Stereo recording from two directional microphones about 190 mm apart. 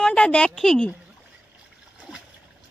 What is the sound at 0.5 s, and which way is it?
Speech, centre (ahead or behind).